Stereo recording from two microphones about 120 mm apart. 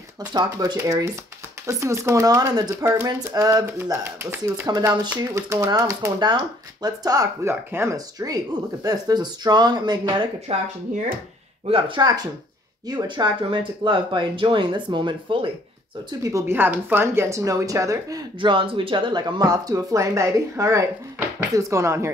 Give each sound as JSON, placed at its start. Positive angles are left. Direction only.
{"t": 0.2, "sound": "speech", "side_deg": -35}
{"t": 4.6, "sound": "speech", "side_deg": -35}
{"t": 10.5, "sound": "speech", "side_deg": -50}
{"t": 11.7, "sound": "speech", "side_deg": -40}
{"t": 16.1, "sound": "speech", "side_deg": -30}
{"t": 18.4, "sound": "speech", "side_deg": -45}